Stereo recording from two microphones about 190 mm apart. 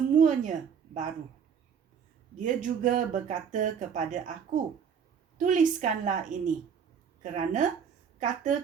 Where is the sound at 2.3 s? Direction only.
40° right (ahead or behind).